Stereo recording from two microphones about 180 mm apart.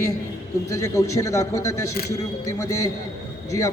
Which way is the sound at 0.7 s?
15° left (ahead or behind).